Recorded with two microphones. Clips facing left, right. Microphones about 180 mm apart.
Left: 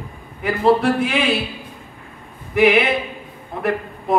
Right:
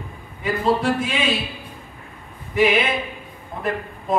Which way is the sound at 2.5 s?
60° left (ahead or behind).